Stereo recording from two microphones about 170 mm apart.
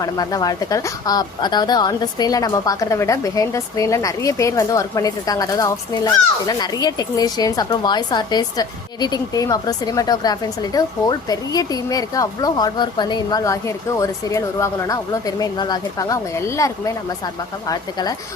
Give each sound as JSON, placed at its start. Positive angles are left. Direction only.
{"t": 0.0, "sound": "a woman's voice", "side_deg": 20}